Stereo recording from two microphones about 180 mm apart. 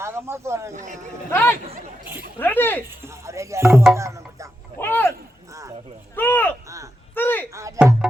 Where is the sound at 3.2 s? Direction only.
15° right (ahead or behind).